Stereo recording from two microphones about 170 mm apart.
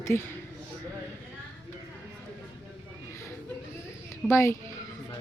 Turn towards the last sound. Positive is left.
turn(degrees=15)  # may be behind; listen again after turning